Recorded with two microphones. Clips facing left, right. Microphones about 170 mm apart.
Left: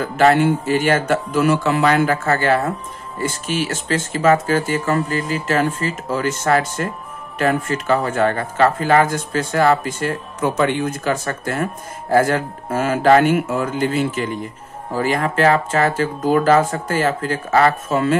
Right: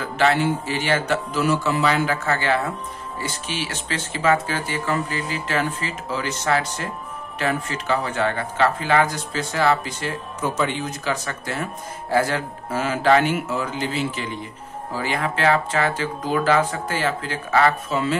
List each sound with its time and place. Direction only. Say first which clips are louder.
0.0 s speech: left 5 dB; 45° left (ahead or behind)